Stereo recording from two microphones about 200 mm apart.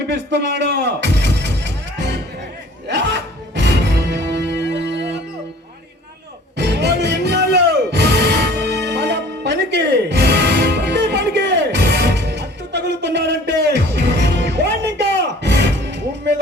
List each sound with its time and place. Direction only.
0.1 s music: 60° right (ahead or behind)
3.5 s music: 60° right (ahead or behind)
6.6 s music: 60° right (ahead or behind)